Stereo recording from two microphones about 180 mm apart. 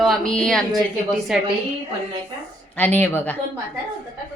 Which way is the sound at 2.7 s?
10° left (ahead or behind).